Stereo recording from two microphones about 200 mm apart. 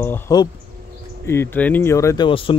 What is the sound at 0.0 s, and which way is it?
Speech, 10° left (ahead or behind).